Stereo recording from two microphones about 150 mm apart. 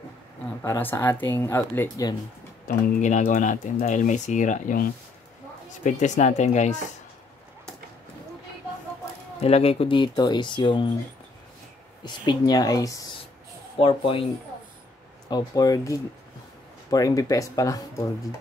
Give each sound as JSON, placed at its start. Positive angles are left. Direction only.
{"t": 0.6, "sound": "speech", "side_deg": 15}
{"t": 2.7, "sound": "speech", "side_deg": 70}
{"t": 3.0, "sound": "speech", "side_deg": 55}
{"t": 5.9, "sound": "speech", "side_deg": 55}
{"t": 9.4, "sound": "speech", "side_deg": 45}
{"t": 12.0, "sound": "speech", "side_deg": 25}
{"t": 13.7, "sound": "speech", "side_deg": 40}
{"t": 15.2, "sound": "speech", "side_deg": 25}